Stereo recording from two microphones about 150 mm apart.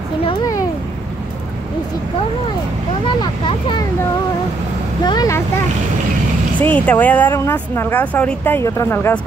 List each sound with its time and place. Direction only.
0.2 s a sound: 30° left (ahead or behind)
3.2 s speech: 30° left (ahead or behind)
5.0 s speech: 25° left (ahead or behind)
6.6 s speech: 10° left (ahead or behind)